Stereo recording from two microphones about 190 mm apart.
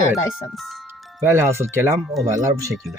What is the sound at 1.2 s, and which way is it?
Speech, 10° right (ahead or behind).